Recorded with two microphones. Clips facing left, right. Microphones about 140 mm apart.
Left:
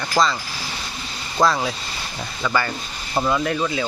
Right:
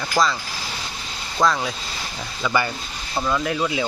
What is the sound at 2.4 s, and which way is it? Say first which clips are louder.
Speech: even; 10° right (ahead or behind).